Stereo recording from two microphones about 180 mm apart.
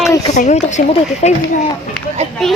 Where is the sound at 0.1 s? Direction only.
20° left (ahead or behind).